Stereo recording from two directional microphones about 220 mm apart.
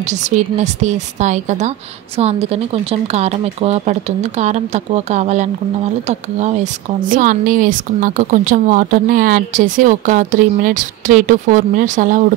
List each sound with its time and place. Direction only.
0.0 s a woman's voice: 30° right (ahead or behind)